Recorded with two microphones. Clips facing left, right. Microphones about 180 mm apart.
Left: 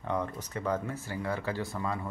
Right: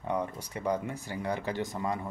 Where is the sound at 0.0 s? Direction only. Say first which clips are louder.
Right 1 dB; 10° right (ahead or behind).